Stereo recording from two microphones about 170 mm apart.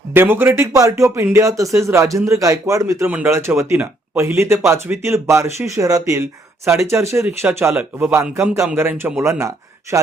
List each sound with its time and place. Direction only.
0.1 s speech: 10° right (ahead or behind)